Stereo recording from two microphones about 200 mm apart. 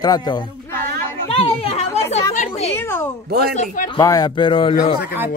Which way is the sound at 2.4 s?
30° left (ahead or behind).